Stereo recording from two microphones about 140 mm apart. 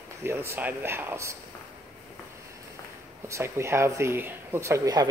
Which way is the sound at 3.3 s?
20° right (ahead or behind).